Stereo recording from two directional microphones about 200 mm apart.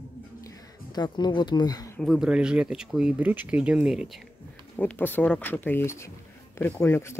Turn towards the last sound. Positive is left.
turn(degrees=10)  # may be behind; listen again after turning